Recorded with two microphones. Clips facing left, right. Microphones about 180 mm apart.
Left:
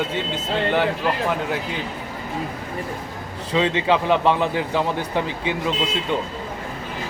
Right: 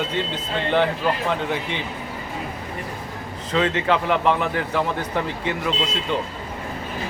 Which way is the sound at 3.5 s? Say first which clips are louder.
Left 1 dB; 15° left (ahead or behind).